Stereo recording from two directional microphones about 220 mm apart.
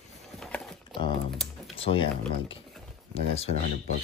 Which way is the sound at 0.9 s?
20° left (ahead or behind).